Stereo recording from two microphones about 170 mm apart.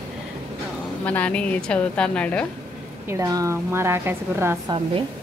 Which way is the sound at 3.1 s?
20° right (ahead or behind).